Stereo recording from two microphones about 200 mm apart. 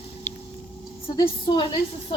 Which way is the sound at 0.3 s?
10° left (ahead or behind).